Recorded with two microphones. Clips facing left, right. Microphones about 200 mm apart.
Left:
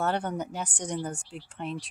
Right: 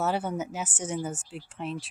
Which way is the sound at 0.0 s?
5° right (ahead or behind).